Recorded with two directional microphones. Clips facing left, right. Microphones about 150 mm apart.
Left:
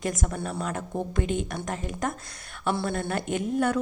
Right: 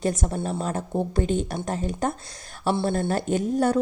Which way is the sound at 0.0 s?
30° right (ahead or behind).